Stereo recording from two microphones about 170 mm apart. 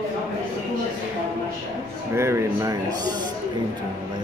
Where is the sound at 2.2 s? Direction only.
15° right (ahead or behind).